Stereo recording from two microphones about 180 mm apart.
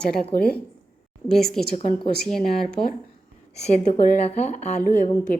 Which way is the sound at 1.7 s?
45° left (ahead or behind).